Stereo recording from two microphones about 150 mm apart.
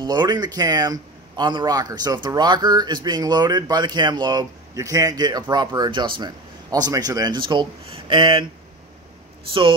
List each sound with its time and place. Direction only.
0.0 s a man's voice: 30° right (ahead or behind)
9.5 s speech: 35° right (ahead or behind)